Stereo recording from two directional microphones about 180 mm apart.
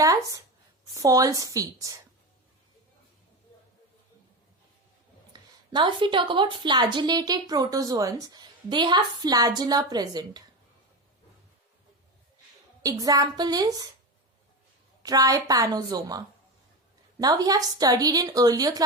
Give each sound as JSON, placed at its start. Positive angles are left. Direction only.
{"t": 0.0, "sound": "a sound", "side_deg": -20}
{"t": 0.9, "sound": "a woman's voice", "side_deg": -20}
{"t": 5.3, "sound": "a woman's voice", "side_deg": -25}
{"t": 12.8, "sound": "a woman's voice", "side_deg": -20}
{"t": 15.0, "sound": "a woman's voice", "side_deg": -20}